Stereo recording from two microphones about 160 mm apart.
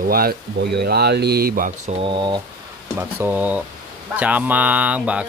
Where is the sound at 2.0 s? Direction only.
30° right (ahead or behind).